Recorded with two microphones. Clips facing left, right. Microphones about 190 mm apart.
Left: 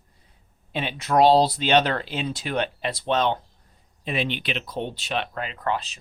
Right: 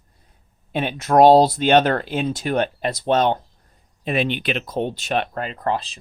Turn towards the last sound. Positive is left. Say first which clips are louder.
# right 3 dB
turn(degrees=-35)  # may be behind; listen again after turning